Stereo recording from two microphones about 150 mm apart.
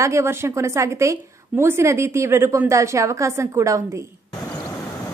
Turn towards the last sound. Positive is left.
turn(degrees=-20)  # may be behind; listen again after turning